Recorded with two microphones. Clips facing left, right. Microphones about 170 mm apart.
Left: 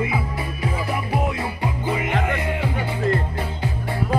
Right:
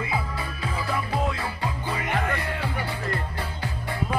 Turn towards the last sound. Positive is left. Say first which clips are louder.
# left 5 dB
turn(degrees=20)  # may be behind; listen again after turning